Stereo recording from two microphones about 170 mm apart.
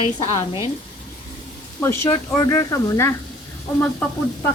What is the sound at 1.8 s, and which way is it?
Speech, 15° left (ahead or behind).